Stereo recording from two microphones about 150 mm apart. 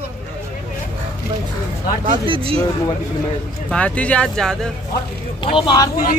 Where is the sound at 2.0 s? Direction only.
35° right (ahead or behind).